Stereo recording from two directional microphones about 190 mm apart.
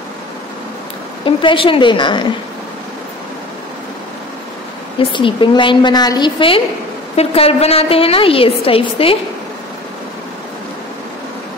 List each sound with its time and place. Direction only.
1.2 s a woman's voice: 25° left (ahead or behind)
4.9 s a woman's voice: 25° left (ahead or behind)